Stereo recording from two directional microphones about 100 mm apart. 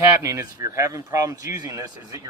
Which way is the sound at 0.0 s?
30° right (ahead or behind).